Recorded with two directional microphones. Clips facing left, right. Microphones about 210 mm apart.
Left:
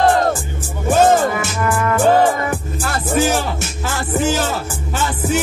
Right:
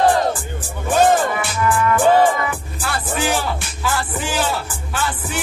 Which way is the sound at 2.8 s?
45° left (ahead or behind).